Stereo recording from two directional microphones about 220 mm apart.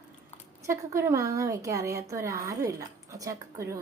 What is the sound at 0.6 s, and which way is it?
Speech, 10° right (ahead or behind).